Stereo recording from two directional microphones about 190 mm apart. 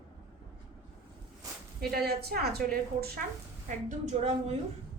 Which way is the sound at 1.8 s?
55° right (ahead or behind).